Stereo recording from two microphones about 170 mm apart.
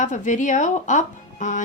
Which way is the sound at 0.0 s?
45° left (ahead or behind).